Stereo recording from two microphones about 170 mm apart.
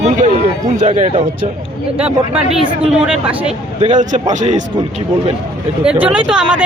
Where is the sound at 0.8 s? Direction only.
45° right (ahead or behind).